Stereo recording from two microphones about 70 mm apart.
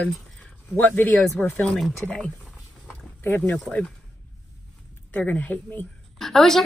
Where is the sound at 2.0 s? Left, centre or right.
Centre.